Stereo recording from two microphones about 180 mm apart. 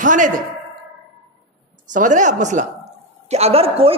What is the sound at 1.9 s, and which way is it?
A man's voice, 45° right (ahead or behind).